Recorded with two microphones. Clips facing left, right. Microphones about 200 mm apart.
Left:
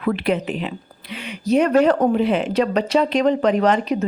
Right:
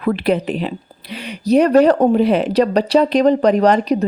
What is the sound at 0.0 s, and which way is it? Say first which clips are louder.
Speech: right 3 dB; 40° right (ahead or behind).